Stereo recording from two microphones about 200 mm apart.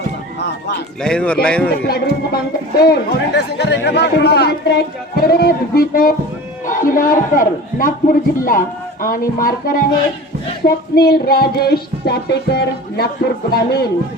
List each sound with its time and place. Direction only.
1.0 s speech: 5° left (ahead or behind)
1.9 s speech: 50° left (ahead or behind)